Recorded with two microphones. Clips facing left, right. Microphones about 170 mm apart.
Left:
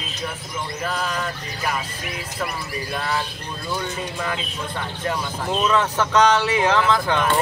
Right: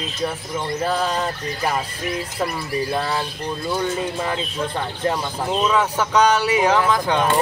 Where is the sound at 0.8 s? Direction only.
35° right (ahead or behind).